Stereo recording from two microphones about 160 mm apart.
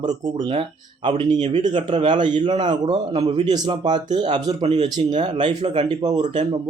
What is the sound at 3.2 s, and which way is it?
Speech, 40° right (ahead or behind).